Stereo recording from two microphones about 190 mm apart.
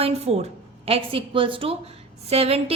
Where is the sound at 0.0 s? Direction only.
35° right (ahead or behind).